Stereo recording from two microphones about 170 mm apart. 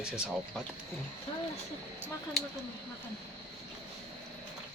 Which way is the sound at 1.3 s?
30° left (ahead or behind).